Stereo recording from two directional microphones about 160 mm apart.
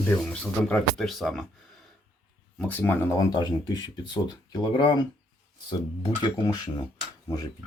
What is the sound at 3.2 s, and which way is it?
Speech, 25° left (ahead or behind).